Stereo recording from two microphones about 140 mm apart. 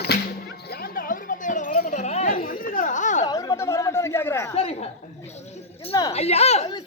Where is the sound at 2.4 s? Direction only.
90° left; by 3.2 s 60° left (ahead or behind).